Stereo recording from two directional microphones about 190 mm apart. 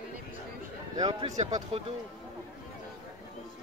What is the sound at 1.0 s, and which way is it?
Speech, 25° right (ahead or behind).